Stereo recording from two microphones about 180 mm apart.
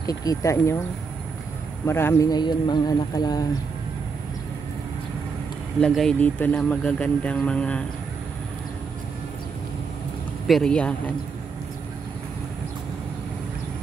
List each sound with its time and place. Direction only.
0.0 s speech: 20° left (ahead or behind)
1.9 s speech: 15° left (ahead or behind)
5.8 s speech: centre (ahead or behind)
10.4 s speech: centre (ahead or behind)